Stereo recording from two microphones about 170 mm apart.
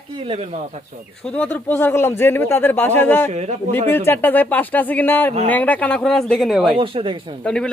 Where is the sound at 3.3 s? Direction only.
40° right (ahead or behind).